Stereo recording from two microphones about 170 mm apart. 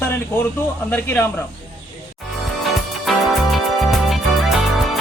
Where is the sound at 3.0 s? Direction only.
Centre (ahead or behind).